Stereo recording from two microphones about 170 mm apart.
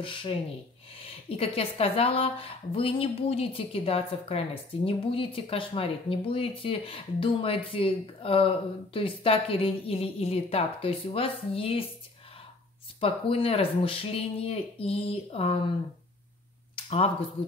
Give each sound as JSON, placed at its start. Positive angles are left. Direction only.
{"t": 0.0, "sound": "speech", "side_deg": 30}
{"t": 13.0, "sound": "speech", "side_deg": 35}
{"t": 16.7, "sound": "a sound", "side_deg": 35}